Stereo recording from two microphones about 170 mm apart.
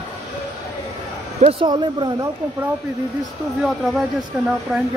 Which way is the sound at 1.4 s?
35° right (ahead or behind).